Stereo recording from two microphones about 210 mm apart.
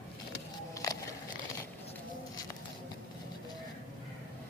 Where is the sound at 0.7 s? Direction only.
15° left (ahead or behind).